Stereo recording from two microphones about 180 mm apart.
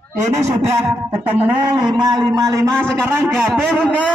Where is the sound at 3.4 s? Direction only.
5° left (ahead or behind).